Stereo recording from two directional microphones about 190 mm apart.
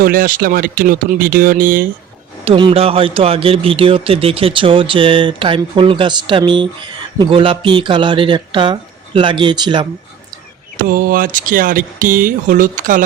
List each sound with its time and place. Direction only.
0.0 s speech: 50° right (ahead or behind)
2.4 s speech: 30° right (ahead or behind)
10.8 s speech: 45° right (ahead or behind)